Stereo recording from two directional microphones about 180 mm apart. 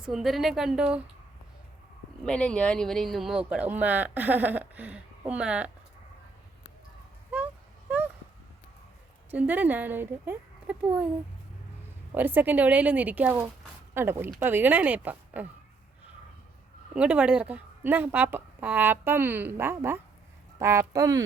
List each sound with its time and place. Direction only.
0.0 s a woman's voice: centre (ahead or behind)
2.2 s speech: 5° left (ahead or behind)
9.3 s speech: 10° right (ahead or behind)
12.1 s speech: 10° right (ahead or behind)
16.9 s speech: 5° right (ahead or behind)